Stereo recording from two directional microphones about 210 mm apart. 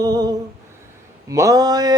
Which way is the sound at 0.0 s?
20° right (ahead or behind).